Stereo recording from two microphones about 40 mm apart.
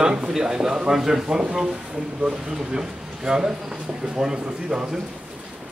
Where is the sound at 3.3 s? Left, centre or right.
Centre.